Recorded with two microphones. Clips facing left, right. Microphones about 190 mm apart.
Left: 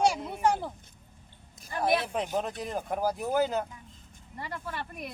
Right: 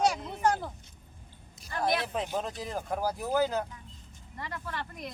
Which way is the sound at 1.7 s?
10° left (ahead or behind).